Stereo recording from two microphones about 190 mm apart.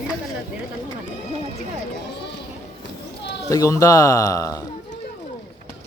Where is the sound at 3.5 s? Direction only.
15° left (ahead or behind).